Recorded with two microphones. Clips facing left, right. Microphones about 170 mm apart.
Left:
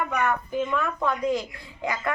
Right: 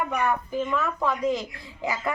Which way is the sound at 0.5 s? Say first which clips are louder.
Even; centre (ahead or behind).